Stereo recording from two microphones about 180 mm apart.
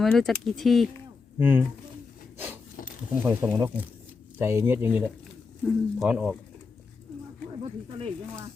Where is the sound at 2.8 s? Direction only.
50° left (ahead or behind).